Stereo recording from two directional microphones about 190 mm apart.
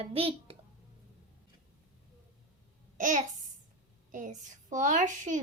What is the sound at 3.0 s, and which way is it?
Babbling, 45° right (ahead or behind).